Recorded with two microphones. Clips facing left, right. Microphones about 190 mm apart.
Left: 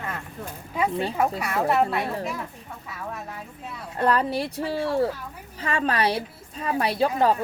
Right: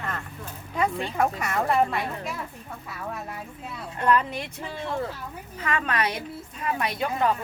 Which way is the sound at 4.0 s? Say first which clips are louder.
Left 1 dB; 35° left (ahead or behind).